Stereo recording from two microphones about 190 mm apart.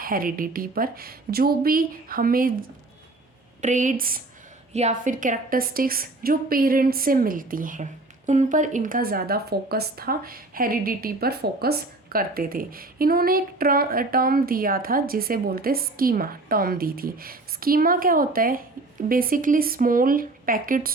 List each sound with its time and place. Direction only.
0.0 s speech: 50° right (ahead or behind)
4.7 s speech: 35° right (ahead or behind)